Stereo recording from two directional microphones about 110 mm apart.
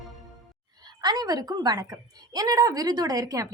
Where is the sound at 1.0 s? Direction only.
40° right (ahead or behind).